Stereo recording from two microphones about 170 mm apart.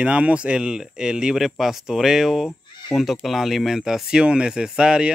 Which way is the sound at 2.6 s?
25° left (ahead or behind).